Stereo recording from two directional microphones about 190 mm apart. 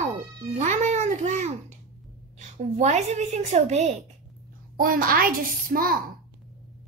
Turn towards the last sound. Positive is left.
turn(degrees=-50)  # may be behind; listen again after turning